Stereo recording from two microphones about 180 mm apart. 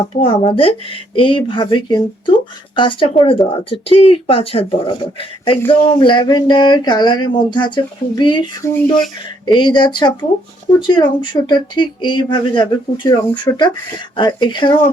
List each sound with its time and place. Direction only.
0.2 s speech: 30° left (ahead or behind)